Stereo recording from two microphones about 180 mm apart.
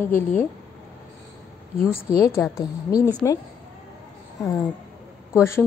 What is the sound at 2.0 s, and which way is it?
A woman's voice, 15° left (ahead or behind).